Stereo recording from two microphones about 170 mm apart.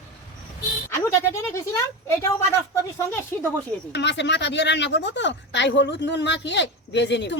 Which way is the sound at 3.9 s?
90° left.